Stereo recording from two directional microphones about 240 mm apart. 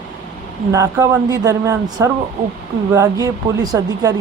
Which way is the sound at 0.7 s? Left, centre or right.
Centre.